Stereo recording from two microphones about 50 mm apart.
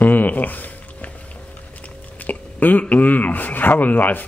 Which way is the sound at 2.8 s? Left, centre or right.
Left.